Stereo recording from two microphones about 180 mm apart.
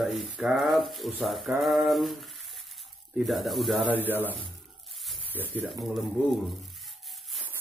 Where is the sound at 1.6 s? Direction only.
Centre (ahead or behind).